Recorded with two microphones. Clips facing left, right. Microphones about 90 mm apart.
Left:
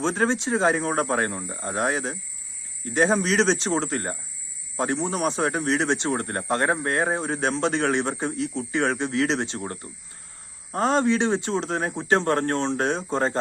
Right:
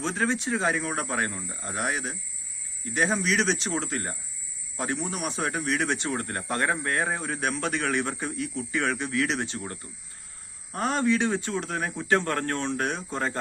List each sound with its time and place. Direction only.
0.0 s speech: 35° left (ahead or behind)